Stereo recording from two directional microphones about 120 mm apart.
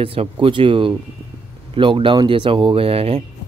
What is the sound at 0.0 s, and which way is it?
A man's voice, 50° right (ahead or behind).